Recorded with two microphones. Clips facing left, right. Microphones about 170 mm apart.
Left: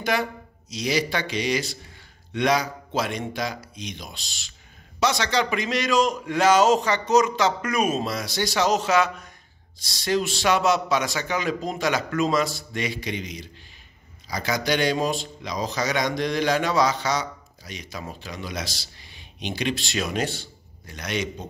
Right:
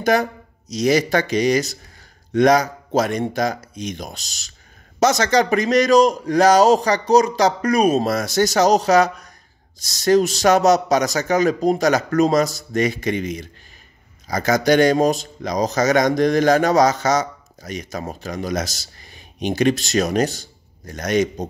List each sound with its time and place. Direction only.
0.0 s a man's voice: 45° right (ahead or behind)